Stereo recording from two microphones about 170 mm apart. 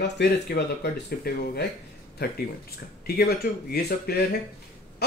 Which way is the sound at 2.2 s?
65° left (ahead or behind).